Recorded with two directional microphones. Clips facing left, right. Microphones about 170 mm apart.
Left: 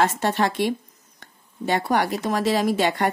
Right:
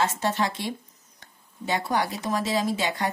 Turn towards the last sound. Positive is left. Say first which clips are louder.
# left 5 dB
turn(degrees=60)  # may be behind; listen again after turning